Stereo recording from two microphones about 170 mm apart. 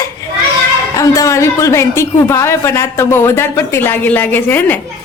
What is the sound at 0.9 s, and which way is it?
A woman's voice, 20° left (ahead or behind).